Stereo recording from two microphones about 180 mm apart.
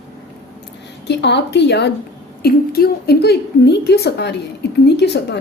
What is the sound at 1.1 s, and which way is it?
Speech, 75° left (ahead or behind).